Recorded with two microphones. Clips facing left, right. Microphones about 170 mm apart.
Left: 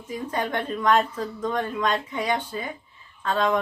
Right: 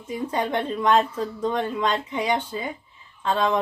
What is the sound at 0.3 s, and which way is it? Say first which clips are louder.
Speech: right 2 dB; 25° right (ahead or behind).